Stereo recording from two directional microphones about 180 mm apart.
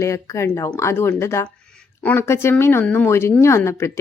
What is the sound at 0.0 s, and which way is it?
A woman's voice, 15° left (ahead or behind).